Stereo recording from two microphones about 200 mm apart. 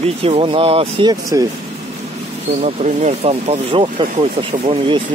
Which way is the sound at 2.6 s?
35° right (ahead or behind).